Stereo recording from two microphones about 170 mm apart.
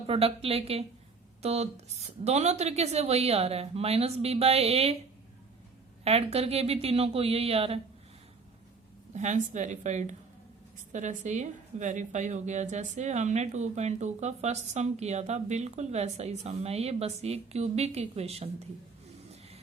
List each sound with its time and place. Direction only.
0.1 s a woman's voice: 35° right (ahead or behind)
6.1 s a woman's voice: 35° right (ahead or behind)
9.1 s a woman's voice: 45° right (ahead or behind)